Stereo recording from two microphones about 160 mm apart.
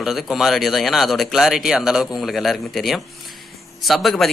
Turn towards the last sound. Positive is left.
turn(degrees=0)  # may be behind; listen again after turning